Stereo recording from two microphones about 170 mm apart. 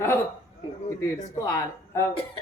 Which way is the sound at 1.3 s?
20° left (ahead or behind).